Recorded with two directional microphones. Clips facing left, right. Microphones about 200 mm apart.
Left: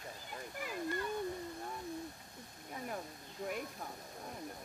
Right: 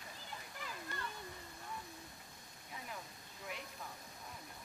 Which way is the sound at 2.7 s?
45° left (ahead or behind).